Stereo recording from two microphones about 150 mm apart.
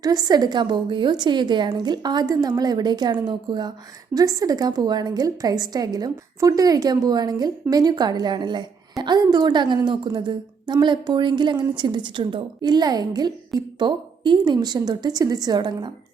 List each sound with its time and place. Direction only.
0.0 s a woman's voice: 25° right (ahead or behind)